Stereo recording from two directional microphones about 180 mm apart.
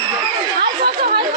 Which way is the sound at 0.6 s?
60° right (ahead or behind).